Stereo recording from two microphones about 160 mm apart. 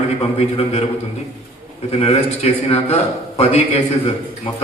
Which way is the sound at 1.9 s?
40° left (ahead or behind).